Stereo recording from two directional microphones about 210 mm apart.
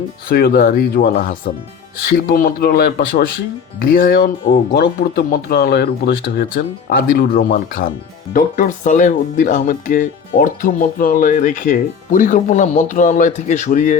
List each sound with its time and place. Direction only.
0.3 s speech: 45° left (ahead or behind)